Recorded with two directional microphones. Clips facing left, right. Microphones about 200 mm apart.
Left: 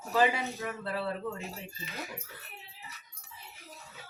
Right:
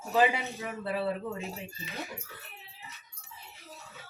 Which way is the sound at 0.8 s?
15° right (ahead or behind).